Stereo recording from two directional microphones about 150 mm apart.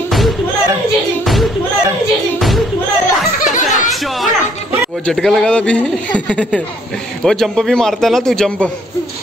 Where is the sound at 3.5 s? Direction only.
60° left (ahead or behind).